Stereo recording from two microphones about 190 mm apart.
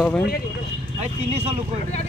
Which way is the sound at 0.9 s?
30° right (ahead or behind).